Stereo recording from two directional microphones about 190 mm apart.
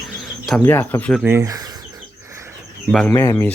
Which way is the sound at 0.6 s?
10° left (ahead or behind).